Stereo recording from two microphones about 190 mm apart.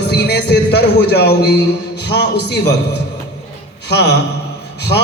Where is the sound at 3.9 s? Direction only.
60° left (ahead or behind).